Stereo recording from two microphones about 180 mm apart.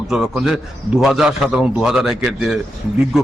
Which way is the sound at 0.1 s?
Centre (ahead or behind).